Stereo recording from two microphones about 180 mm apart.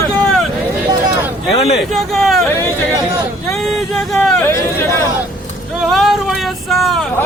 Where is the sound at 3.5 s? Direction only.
Centre (ahead or behind).